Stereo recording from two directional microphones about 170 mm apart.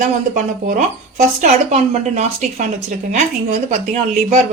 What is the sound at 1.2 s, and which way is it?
Speech, 45° right (ahead or behind).